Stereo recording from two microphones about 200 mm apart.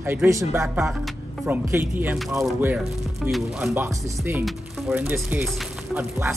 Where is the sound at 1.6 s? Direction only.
10° right (ahead or behind).